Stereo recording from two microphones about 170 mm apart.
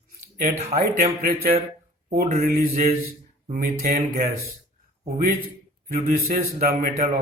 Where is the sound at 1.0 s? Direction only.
55° right (ahead or behind).